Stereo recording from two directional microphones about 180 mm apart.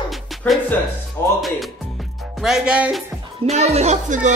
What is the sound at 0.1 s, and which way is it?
Music, 5° left (ahead or behind).